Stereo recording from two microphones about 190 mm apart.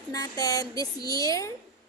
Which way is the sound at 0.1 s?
20° left (ahead or behind).